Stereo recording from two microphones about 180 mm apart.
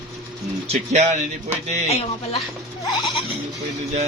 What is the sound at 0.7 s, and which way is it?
Speech, 40° right (ahead or behind).